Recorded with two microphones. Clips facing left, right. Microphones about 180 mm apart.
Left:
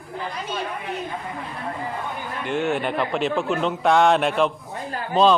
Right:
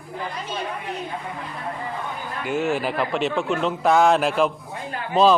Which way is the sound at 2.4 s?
Centre (ahead or behind).